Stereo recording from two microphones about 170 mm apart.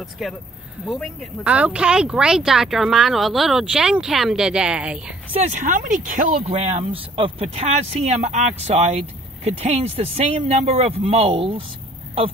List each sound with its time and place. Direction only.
0.0 s speech: centre (ahead or behind)
5.3 s speech: 40° right (ahead or behind)